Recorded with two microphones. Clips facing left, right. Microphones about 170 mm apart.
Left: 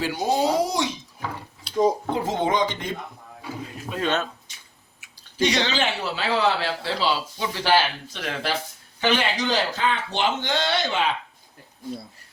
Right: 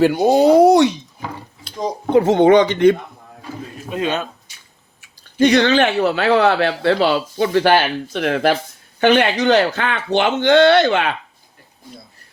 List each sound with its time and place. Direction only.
0.0 s speech: 60° right (ahead or behind)
2.0 s speech: 70° right (ahead or behind)
3.8 s speech: 15° right (ahead or behind)
5.4 s speech: 55° right (ahead or behind)